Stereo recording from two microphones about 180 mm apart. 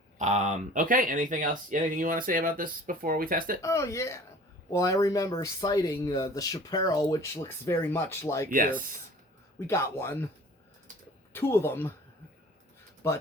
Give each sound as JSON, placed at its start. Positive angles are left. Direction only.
{"t": 0.2, "sound": "speech", "side_deg": -40}
{"t": 3.6, "sound": "speech", "side_deg": 15}
{"t": 8.4, "sound": "speech", "side_deg": -50}
{"t": 9.6, "sound": "speech", "side_deg": 15}
{"t": 11.3, "sound": "speech", "side_deg": 15}
{"t": 13.0, "sound": "speech", "side_deg": 15}